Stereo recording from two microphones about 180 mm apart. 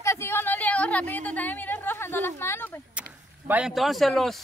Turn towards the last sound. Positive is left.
turn(degrees=0)  # may be behind; listen again after turning